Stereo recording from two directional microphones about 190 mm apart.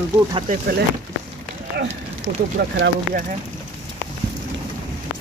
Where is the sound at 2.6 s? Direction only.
55° right (ahead or behind).